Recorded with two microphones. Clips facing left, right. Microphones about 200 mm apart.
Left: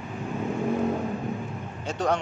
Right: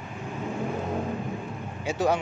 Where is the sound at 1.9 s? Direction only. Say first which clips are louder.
Right 1 dB; 5° right (ahead or behind).